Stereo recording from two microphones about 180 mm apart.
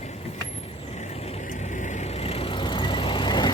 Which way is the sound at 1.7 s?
40° left (ahead or behind).